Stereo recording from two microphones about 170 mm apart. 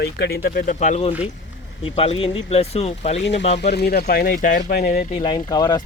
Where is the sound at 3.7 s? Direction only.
70° left (ahead or behind).